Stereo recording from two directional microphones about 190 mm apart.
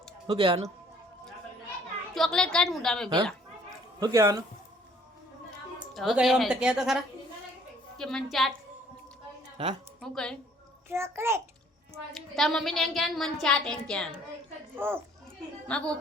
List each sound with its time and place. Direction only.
0.3 s speech: 25° right (ahead or behind)
2.1 s a woman's voice: 5° left (ahead or behind)
4.0 s a child's voice: 15° right (ahead or behind)
5.9 s a woman's voice: centre (ahead or behind)
10.0 s a woman's voice: 5° left (ahead or behind)
10.8 s a child's voice: 15° right (ahead or behind)
12.1 s a woman's voice: centre (ahead or behind)
14.8 s a child's voice: 10° right (ahead or behind)
15.6 s a woman's voice: 5° left (ahead or behind)